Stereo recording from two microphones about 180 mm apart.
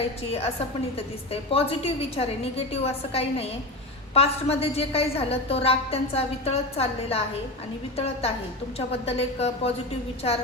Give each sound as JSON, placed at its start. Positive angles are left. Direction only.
{"t": 0.0, "sound": "a woman's voice", "side_deg": 35}